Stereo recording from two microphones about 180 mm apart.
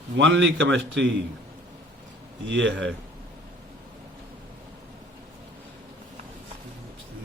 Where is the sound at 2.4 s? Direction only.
85° right.